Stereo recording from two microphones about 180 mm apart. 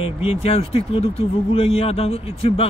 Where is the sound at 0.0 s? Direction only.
35° left (ahead or behind).